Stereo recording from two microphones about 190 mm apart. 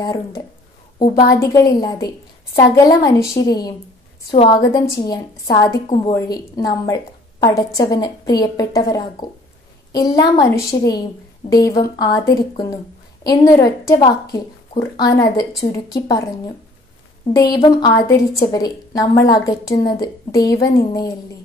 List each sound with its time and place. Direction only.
0.0 s a woman's voice: 20° left (ahead or behind)
4.3 s a woman's voice: 25° left (ahead or behind)
17.3 s a woman's voice: 20° left (ahead or behind)